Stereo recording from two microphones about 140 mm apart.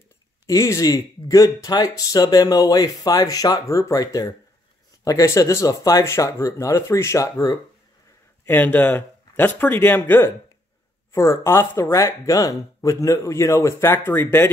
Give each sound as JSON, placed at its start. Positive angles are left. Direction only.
{"t": 0.5, "sound": "speech", "side_deg": 25}